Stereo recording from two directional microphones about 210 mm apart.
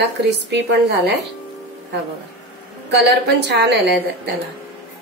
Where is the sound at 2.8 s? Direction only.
50° right (ahead or behind).